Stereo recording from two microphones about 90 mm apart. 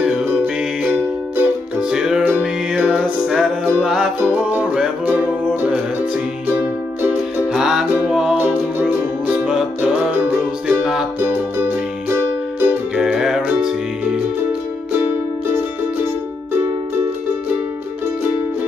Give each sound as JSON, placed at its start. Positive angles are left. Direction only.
{"t": 0.0, "sound": "music", "side_deg": -15}
{"t": 1.8, "sound": "music", "side_deg": -10}
{"t": 4.2, "sound": "music", "side_deg": -15}
{"t": 7.5, "sound": "music", "side_deg": -5}
{"t": 9.4, "sound": "music", "side_deg": -5}
{"t": 10.1, "sound": "music", "side_deg": -20}
{"t": 12.9, "sound": "music", "side_deg": -10}